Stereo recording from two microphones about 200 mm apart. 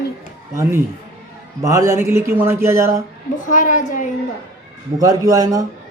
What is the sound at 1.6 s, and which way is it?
A man's voice, 15° right (ahead or behind).